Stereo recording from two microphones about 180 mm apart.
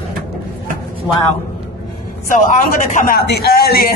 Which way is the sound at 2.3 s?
45° left (ahead or behind).